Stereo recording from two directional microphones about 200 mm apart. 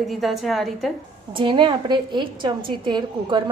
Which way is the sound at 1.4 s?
25° right (ahead or behind).